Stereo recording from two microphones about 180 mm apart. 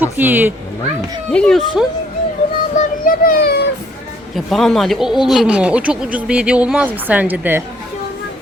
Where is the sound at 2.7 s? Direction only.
50° left (ahead or behind).